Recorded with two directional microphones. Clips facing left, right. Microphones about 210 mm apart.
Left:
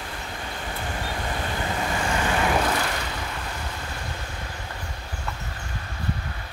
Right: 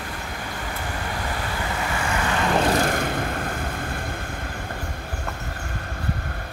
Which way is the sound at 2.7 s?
50° right (ahead or behind).